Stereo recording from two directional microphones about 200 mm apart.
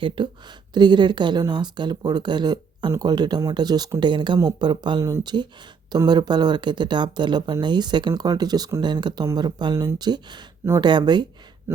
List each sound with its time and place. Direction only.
0.0 s a woman's voice: 25° right (ahead or behind)